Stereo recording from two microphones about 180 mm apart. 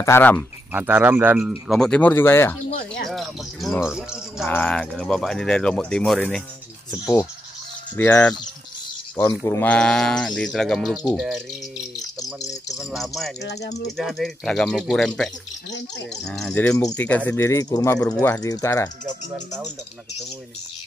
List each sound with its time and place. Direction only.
0.0 s speech: 10° left (ahead or behind)
0.7 s speech: 10° right (ahead or behind)
1.7 s speech: 5° left (ahead or behind)
3.1 s speech: centre (ahead or behind)
4.5 s speech: 10° left (ahead or behind)
7.9 s speech: 10° left (ahead or behind)
12.7 s speech: centre (ahead or behind)
13.4 s speech: 65° left (ahead or behind)
13.9 s speech: centre (ahead or behind); by 18.0 s 20° left (ahead or behind)
18.0 s speech: 5° left (ahead or behind)
18.3 s speech: 20° left (ahead or behind)
19.3 s speech: centre (ahead or behind)